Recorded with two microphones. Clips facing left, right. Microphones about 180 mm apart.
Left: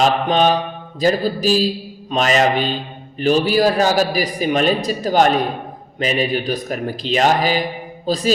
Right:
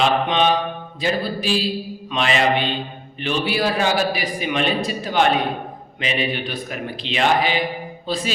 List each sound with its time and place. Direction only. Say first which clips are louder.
0.0 s a man's voice: left 3 dB; 40° left (ahead or behind)